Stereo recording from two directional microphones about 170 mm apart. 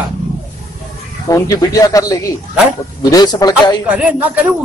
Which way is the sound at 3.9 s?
10° right (ahead or behind).